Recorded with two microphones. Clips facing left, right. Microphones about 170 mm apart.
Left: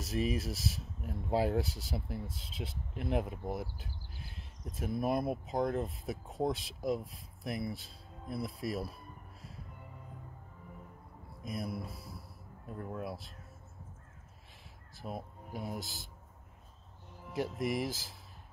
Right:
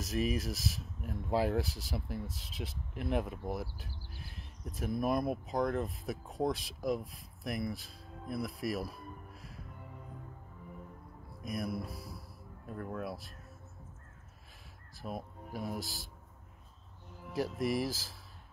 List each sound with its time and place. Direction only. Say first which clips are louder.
0.0 s speech: even; 30° left (ahead or behind)
11.4 s speech: right 2 dB; 25° left (ahead or behind)
15.0 s speech: right 1 dB; 20° left (ahead or behind)
17.3 s speech: right 1 dB; 20° left (ahead or behind)